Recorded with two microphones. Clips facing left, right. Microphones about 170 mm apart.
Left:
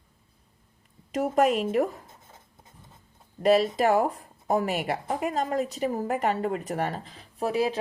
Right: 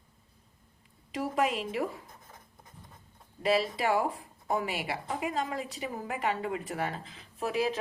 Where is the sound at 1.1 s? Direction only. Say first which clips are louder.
Left 7 dB; 45° left (ahead or behind).